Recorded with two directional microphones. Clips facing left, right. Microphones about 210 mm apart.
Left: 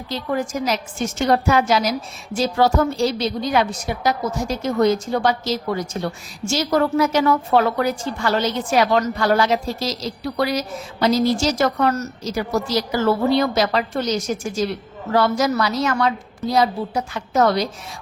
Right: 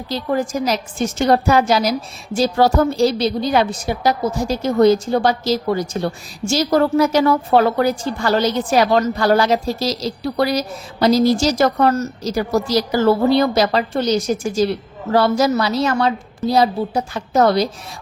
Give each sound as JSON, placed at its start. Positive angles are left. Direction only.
{"t": 0.1, "sound": "a woman's voice", "side_deg": -35}